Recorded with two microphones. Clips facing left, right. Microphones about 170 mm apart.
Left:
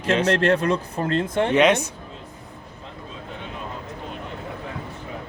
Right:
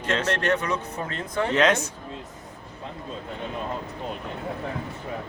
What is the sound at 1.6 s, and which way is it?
Speech, 15° left (ahead or behind).